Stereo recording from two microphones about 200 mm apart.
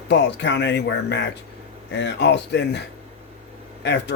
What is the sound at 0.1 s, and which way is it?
Speech, 60° left (ahead or behind).